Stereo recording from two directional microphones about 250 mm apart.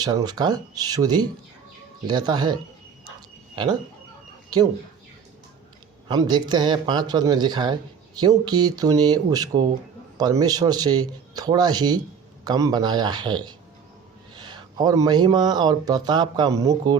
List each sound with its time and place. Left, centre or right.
0.0 s speech: centre
3.2 s a sound: centre
6.1 s speech: centre